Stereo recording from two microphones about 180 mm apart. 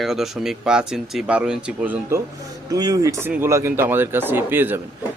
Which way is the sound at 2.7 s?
20° right (ahead or behind).